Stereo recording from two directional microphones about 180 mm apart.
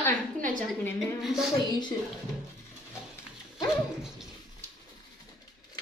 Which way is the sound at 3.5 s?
Centre (ahead or behind).